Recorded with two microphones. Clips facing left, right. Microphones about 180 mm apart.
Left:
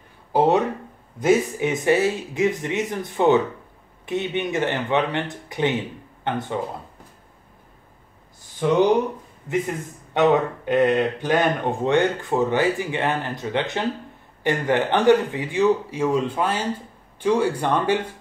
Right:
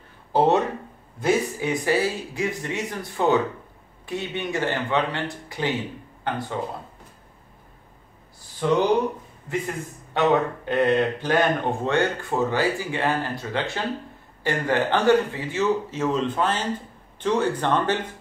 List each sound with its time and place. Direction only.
1.2 s speech: 20° left (ahead or behind)
8.5 s speech: 15° left (ahead or behind)
10.1 s speech: 15° left (ahead or behind)